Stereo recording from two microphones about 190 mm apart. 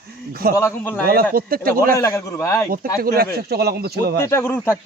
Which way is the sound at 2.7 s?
50° right (ahead or behind).